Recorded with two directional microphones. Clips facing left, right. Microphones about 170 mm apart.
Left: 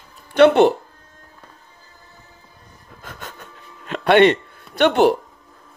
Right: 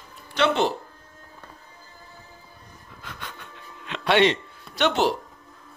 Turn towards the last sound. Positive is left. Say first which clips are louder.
# left 7 dB
turn(degrees=55)  # may be behind; listen again after turning